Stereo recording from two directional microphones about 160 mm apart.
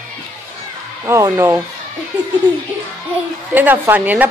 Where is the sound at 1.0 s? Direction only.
15° right (ahead or behind).